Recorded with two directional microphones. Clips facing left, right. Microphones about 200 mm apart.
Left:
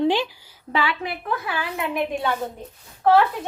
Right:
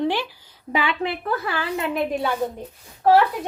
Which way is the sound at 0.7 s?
15° right (ahead or behind).